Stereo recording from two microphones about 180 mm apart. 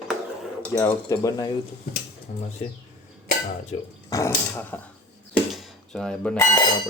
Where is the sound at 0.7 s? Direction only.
20° left (ahead or behind).